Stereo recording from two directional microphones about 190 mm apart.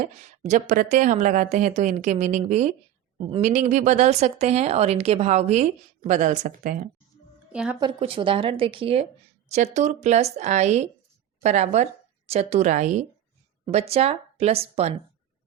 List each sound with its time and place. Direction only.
0.0 s speech: 40° right (ahead or behind)
7.5 s a woman's voice: 5° right (ahead or behind)
7.8 s speech: 25° right (ahead or behind)